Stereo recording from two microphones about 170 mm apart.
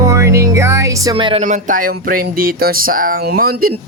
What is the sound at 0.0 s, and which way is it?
Music, 15° right (ahead or behind).